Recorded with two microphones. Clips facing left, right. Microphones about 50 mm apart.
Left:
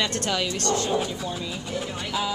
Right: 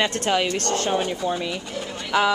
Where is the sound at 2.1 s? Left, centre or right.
Right.